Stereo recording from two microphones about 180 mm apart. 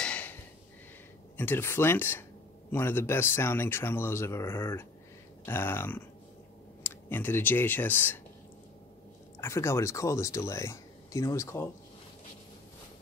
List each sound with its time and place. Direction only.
0.0 s a sound: 10° left (ahead or behind)
1.3 s speech: 10° left (ahead or behind)
9.4 s speech: 15° left (ahead or behind)